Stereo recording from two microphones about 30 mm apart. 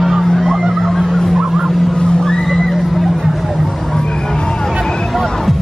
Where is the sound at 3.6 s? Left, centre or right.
Centre.